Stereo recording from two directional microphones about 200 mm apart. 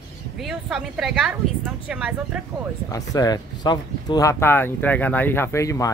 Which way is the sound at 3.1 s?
20° left (ahead or behind).